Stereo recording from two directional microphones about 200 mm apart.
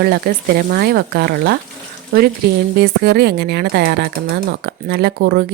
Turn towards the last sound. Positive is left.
turn(degrees=-50)  # may be behind; listen again after turning